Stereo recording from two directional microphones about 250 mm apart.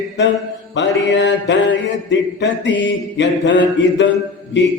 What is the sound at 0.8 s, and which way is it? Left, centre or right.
Mantra, left.